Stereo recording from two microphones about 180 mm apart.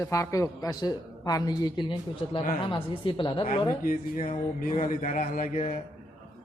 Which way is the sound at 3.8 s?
50° left (ahead or behind).